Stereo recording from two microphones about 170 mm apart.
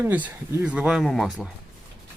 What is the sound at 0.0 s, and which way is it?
Speech, 10° right (ahead or behind).